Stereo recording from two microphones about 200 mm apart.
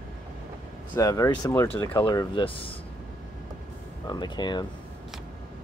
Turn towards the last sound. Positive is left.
turn(degrees=20)  # may be behind; listen again after turning